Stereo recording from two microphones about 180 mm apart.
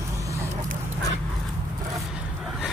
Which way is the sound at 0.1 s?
15° right (ahead or behind).